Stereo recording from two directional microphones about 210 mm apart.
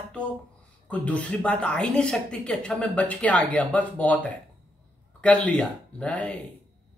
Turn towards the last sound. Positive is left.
turn(degrees=5)  # may be behind; listen again after turning